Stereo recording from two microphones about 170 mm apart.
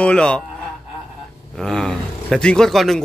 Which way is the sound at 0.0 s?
5° left (ahead or behind).